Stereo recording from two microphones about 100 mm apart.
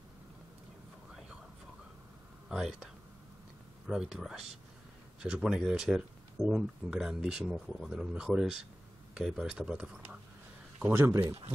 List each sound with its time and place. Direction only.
2.5 s speech: 5° right (ahead or behind)
10.8 s speech: 25° right (ahead or behind)